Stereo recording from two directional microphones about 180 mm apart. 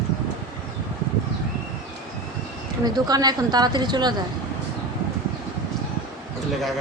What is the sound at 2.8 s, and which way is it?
A woman's voice, 20° right (ahead or behind).